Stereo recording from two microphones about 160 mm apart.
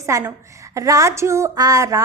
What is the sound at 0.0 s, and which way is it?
A woman's voice, 20° right (ahead or behind).